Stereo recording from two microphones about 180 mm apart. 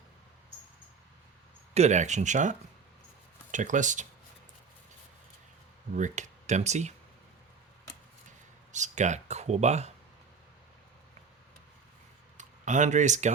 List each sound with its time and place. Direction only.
1.7 s speech: 40° right (ahead or behind)
5.9 s speech: 40° right (ahead or behind)
8.7 s speech: 40° right (ahead or behind)
12.4 s speech: 40° right (ahead or behind)